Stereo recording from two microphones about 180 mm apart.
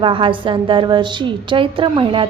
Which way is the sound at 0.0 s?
30° right (ahead or behind).